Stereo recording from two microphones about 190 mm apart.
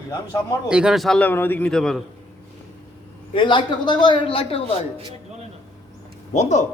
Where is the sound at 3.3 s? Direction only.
25° left (ahead or behind).